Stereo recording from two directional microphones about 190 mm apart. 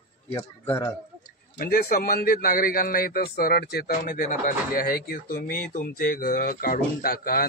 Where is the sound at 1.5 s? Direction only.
50° left (ahead or behind).